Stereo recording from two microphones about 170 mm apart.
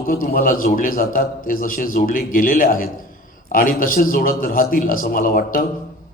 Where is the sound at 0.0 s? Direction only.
55° left (ahead or behind).